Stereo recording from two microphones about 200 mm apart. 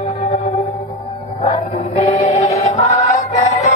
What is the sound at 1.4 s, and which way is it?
Music, 35° left (ahead or behind).